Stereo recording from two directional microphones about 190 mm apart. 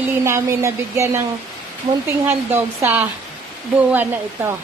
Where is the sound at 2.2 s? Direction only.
10° right (ahead or behind).